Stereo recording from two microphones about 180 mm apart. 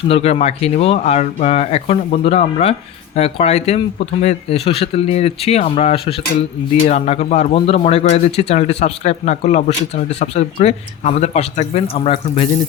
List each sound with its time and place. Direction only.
0.1 s speech: 35° left (ahead or behind)